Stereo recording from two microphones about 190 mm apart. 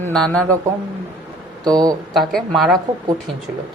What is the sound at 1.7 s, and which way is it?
Speech, 20° right (ahead or behind).